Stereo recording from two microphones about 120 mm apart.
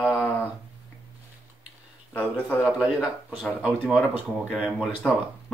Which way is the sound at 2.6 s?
10° right (ahead or behind).